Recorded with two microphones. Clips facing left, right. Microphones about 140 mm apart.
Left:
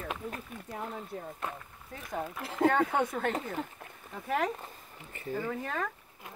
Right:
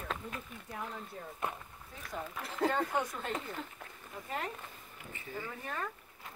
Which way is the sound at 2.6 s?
60° left (ahead or behind).